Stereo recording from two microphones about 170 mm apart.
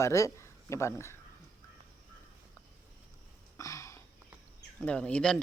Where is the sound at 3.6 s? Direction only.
20° left (ahead or behind).